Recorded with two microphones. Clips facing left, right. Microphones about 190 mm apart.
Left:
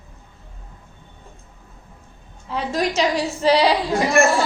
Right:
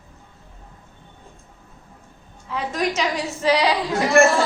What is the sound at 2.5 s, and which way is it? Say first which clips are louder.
A woman's voice: left 2 dB; 30° left (ahead or behind).